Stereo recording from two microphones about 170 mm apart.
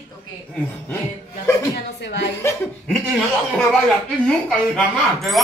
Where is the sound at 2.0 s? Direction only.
90° left.